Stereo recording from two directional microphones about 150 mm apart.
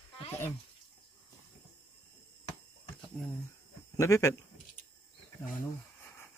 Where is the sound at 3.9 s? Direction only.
20° left (ahead or behind).